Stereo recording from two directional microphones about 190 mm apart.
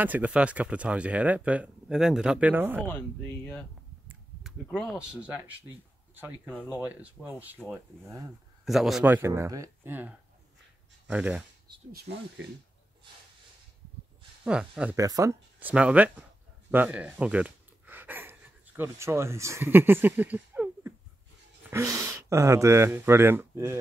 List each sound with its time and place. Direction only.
0.0 s speech: 10° right (ahead or behind)
4.4 s speech: centre (ahead or behind)
8.6 s speech: centre (ahead or behind)
11.9 s speech: 60° right (ahead or behind)
14.4 s speech: 5° right (ahead or behind)
15.0 s speech: 15° right (ahead or behind)